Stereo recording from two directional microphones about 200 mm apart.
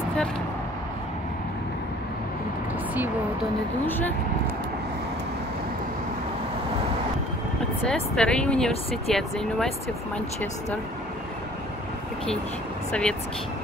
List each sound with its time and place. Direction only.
3.8 s speech: 10° left (ahead or behind)
7.9 s speech: 5° left (ahead or behind)
12.9 s speech: 5° left (ahead or behind)